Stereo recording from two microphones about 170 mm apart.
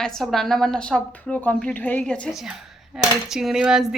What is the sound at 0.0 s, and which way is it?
A woman's voice, centre (ahead or behind).